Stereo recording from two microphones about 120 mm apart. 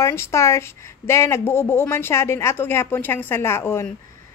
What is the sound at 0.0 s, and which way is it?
A woman's voice, 25° left (ahead or behind).